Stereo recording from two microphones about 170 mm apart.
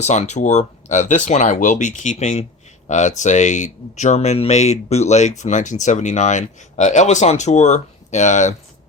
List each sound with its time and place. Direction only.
0.0 s speech: 40° left (ahead or behind)